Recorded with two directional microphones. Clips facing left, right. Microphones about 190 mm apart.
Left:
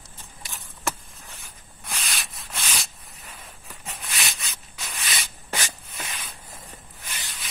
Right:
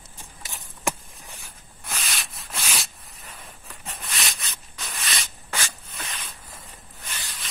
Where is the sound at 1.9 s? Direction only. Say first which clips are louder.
Right 1 dB; centre (ahead or behind).